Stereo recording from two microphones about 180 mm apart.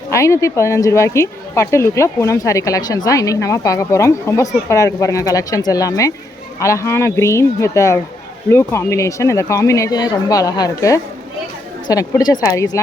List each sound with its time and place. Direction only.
0.1 s a woman's voice: 15° left (ahead or behind)